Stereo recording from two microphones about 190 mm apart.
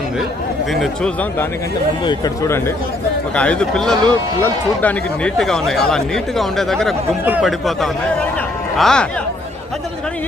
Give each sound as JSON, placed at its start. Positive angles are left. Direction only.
{"t": 0.7, "sound": "a man's voice", "side_deg": 0}
{"t": 2.0, "sound": "a man's voice", "side_deg": 20}